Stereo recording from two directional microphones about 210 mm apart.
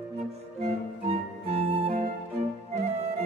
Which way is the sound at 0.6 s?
25° right (ahead or behind).